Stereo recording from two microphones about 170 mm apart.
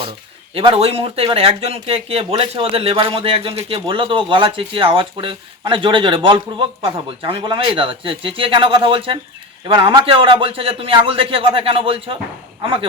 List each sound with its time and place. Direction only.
0.5 s speech: 35° right (ahead or behind)